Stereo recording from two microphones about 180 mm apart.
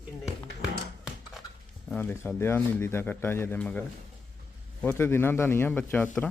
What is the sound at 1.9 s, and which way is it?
Speech, 10° left (ahead or behind).